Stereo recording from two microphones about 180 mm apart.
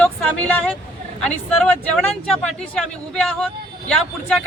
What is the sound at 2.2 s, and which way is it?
Speech, 5° left (ahead or behind).